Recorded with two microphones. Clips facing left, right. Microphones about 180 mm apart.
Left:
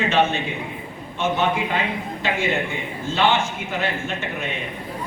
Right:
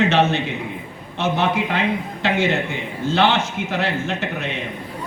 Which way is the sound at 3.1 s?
80° right.